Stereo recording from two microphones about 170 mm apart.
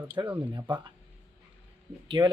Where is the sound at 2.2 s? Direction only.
25° right (ahead or behind).